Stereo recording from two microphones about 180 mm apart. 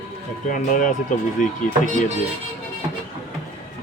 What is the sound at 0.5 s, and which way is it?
Speech, 45° left (ahead or behind).